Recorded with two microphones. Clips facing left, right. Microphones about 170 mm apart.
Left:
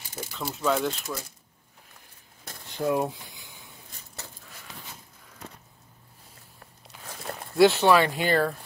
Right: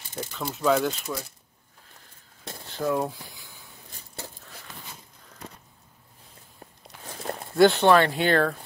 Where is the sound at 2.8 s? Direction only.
20° left (ahead or behind).